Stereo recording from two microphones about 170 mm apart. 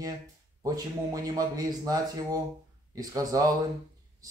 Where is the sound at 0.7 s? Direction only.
20° right (ahead or behind).